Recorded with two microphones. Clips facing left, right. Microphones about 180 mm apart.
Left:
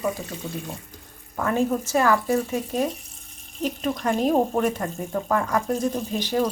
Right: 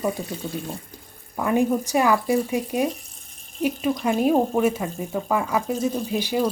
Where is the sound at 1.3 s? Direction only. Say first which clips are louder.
Right 2 dB; 15° right (ahead or behind).